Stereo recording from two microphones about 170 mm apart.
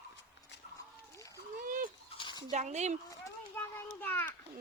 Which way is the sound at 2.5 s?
45° right (ahead or behind).